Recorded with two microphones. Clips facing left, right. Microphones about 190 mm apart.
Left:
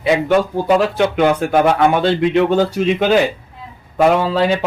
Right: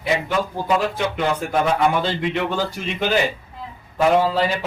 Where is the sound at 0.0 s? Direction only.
65° left (ahead or behind).